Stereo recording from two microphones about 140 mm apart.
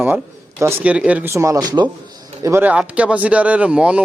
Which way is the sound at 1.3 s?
25° right (ahead or behind).